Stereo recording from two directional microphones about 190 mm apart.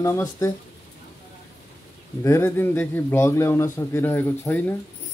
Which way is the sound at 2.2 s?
15° left (ahead or behind).